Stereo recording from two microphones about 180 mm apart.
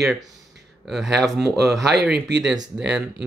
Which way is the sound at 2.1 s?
70° right (ahead or behind).